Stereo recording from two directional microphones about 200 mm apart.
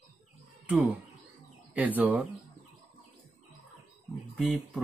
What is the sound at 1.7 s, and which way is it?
Speech, 10° right (ahead or behind).